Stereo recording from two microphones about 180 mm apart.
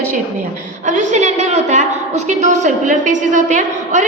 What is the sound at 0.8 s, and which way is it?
A woman's voice, 45° right (ahead or behind).